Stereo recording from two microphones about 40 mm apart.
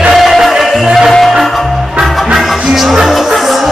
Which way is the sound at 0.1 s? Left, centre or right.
Centre.